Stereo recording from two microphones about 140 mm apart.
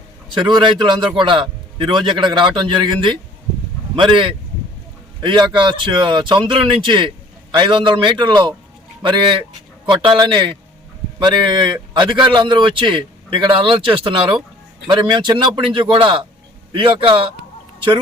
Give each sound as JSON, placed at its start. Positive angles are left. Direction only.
{"t": 0.3, "sound": "a man's voice", "side_deg": -35}